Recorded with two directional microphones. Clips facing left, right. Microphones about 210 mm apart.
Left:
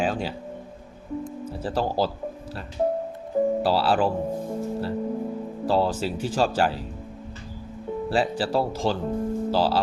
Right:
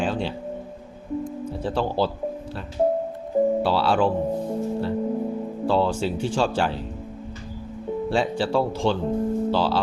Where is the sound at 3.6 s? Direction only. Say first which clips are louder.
Even; 35° left (ahead or behind).